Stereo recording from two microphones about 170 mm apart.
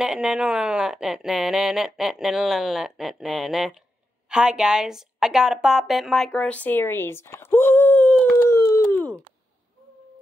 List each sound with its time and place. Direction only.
0.0 s a woman's voice: 5° right (ahead or behind)
8.5 s howl: 20° left (ahead or behind)